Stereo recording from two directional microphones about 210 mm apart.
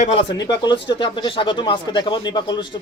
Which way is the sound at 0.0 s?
25° left (ahead or behind).